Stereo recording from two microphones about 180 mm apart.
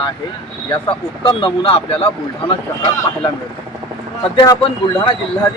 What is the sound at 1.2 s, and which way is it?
Speech, 30° left (ahead or behind).